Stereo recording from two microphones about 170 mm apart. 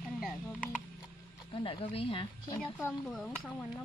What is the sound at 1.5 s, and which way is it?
Speech, 30° left (ahead or behind).